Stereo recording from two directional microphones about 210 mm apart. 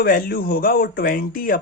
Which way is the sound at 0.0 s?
45° left (ahead or behind).